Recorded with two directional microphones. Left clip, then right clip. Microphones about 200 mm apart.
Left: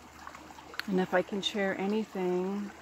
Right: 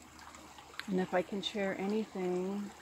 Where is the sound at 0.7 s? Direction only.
20° left (ahead or behind).